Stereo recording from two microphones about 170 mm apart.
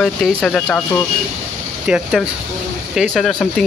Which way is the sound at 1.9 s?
Centre (ahead or behind).